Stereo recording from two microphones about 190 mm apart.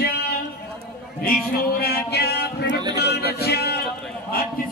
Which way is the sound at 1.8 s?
60° left (ahead or behind).